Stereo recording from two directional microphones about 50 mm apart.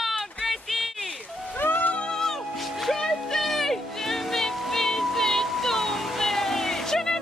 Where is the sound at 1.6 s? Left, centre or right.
Left.